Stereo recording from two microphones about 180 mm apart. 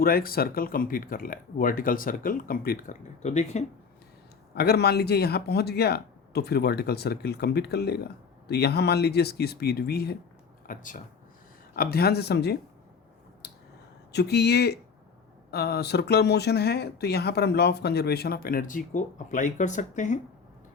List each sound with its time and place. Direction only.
0.0 s speech: 55° left (ahead or behind); by 3.6 s 40° left (ahead or behind)
4.5 s speech: 65° left (ahead or behind)
10.7 s speech: 45° left (ahead or behind)
11.7 s speech: 60° left (ahead or behind)
13.4 s a sound: 70° left (ahead or behind)
14.1 s speech: 65° left (ahead or behind); by 20.1 s 45° left (ahead or behind)